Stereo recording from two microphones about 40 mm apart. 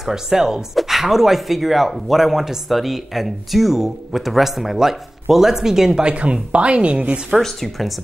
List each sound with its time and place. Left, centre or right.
0.0 s speech: centre
6.0 s speech: right
7.4 s speech: centre